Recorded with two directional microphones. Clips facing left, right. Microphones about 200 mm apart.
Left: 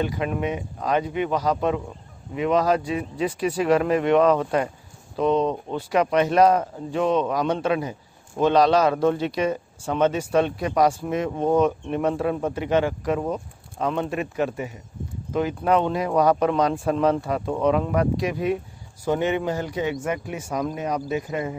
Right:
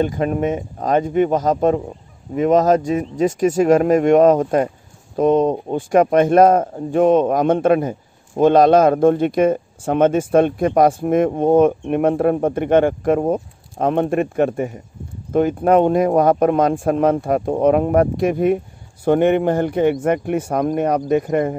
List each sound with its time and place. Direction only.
0.0 s speech: 45° right (ahead or behind)